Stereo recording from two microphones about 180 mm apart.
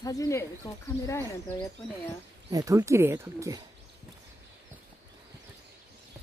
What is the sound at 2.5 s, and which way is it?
Speech, 15° right (ahead or behind).